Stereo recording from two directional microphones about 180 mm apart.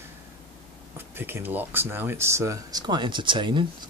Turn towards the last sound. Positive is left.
turn(degrees=-25)  # may be behind; listen again after turning